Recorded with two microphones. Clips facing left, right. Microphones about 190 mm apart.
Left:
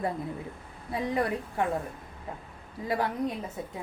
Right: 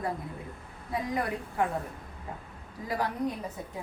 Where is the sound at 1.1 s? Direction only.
25° left (ahead or behind).